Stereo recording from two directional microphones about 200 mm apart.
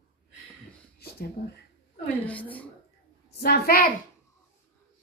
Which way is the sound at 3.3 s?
50° left (ahead or behind).